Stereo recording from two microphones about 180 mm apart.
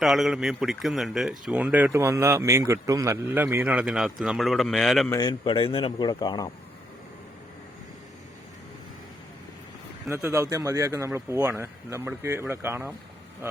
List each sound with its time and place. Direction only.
0.0 s speech: centre (ahead or behind)
5.0 s a man's voice: 20° left (ahead or behind)
10.1 s speech: 15° right (ahead or behind)